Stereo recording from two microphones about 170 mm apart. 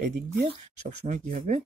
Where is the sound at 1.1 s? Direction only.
50° right (ahead or behind).